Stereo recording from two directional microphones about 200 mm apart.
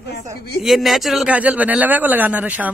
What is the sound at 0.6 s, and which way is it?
A man's voice, centre (ahead or behind).